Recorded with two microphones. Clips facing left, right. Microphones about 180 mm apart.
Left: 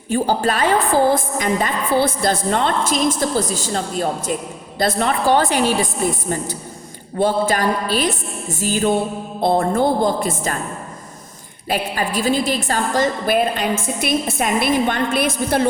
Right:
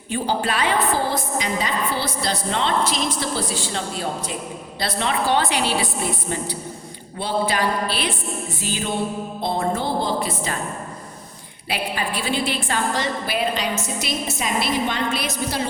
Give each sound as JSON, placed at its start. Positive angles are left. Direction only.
{"t": 0.1, "sound": "a woman's voice", "side_deg": 45}
{"t": 11.7, "sound": "a woman's voice", "side_deg": 45}